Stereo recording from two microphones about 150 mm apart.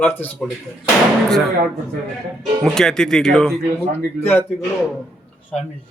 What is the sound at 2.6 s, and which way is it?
Speech, 5° left (ahead or behind).